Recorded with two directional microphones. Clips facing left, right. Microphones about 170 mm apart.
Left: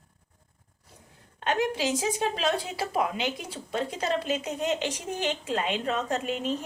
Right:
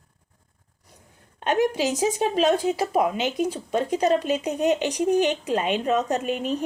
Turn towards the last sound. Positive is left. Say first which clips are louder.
# right 4 dB
turn(degrees=-15)  # may be behind; listen again after turning